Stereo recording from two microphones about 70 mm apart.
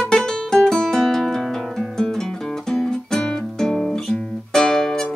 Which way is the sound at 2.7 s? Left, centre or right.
Centre.